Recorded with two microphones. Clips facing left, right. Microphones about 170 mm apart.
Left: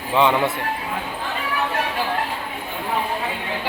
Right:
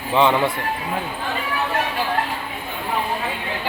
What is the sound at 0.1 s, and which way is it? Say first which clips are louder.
Speech: right 1 dB; 5° left (ahead or behind).